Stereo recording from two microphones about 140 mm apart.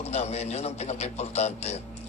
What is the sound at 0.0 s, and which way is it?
A man's voice, 50° left (ahead or behind).